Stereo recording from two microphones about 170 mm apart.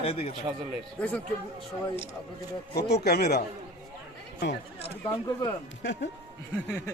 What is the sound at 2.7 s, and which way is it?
Speech, 65° left (ahead or behind).